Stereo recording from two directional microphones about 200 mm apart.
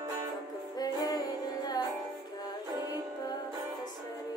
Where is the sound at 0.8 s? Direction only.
20° left (ahead or behind).